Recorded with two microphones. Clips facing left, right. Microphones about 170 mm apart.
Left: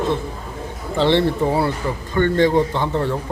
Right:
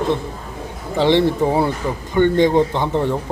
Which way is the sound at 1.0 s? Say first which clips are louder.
Right 2 dB; 15° right (ahead or behind).